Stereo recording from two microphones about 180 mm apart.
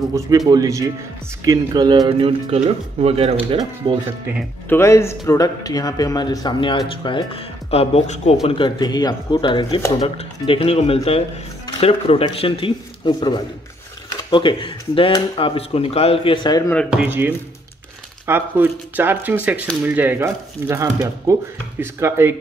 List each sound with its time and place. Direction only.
0.5 s speech: 20° right (ahead or behind)
4.6 s speech: 15° left (ahead or behind)
16.9 s speech: 10° right (ahead or behind)